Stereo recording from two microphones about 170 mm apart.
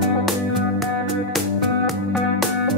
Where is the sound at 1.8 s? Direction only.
Centre (ahead or behind).